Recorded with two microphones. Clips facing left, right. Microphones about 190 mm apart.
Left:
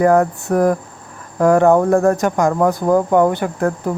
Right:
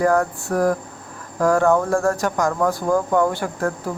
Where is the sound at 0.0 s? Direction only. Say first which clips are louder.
Left 5 dB; 20° left (ahead or behind).